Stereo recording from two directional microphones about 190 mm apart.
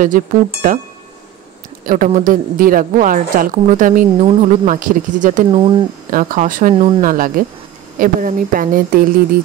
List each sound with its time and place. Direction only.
0.0 s a woman's voice: 45° right (ahead or behind)
1.9 s a woman's voice: 45° right (ahead or behind)
5.5 s speech: 25° right (ahead or behind)
6.0 s a woman's voice: 45° right (ahead or behind)